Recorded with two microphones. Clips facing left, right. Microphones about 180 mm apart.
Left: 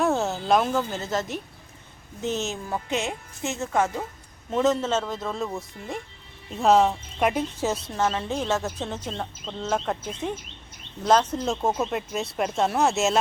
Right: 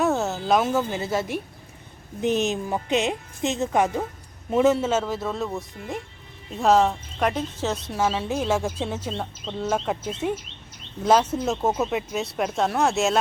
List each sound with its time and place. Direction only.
0.0 s speech: centre (ahead or behind)
7.9 s speech: 10° right (ahead or behind)